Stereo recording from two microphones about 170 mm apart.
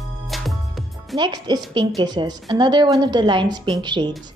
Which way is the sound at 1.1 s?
25° right (ahead or behind).